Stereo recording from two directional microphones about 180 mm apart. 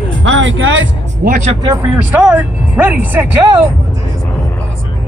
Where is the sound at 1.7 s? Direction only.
10° right (ahead or behind).